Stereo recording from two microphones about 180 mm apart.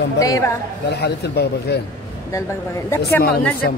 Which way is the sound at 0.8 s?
65° left (ahead or behind).